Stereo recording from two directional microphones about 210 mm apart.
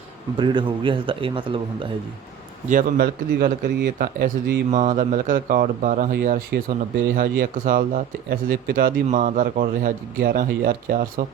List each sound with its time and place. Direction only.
0.3 s speech: 20° right (ahead or behind)
2.6 s speech: 45° right (ahead or behind)